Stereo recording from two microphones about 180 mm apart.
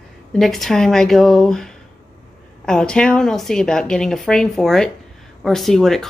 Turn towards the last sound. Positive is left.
turn(degrees=0)  # may be behind; listen again after turning